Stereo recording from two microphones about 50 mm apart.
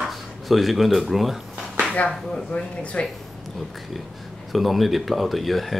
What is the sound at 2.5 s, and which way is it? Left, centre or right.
Speech, left.